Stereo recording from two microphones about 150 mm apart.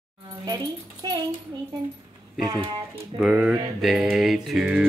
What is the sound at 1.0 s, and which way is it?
Speech, 25° right (ahead or behind).